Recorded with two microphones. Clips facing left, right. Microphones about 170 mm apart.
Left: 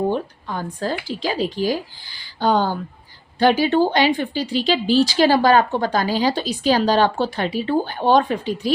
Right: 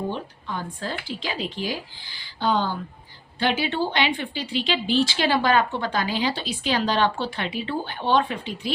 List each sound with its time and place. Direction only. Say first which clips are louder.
0.1 s speech: left 7 dB; 45° left (ahead or behind)